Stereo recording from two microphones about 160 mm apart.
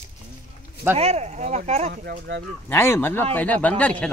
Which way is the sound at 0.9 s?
40° right (ahead or behind).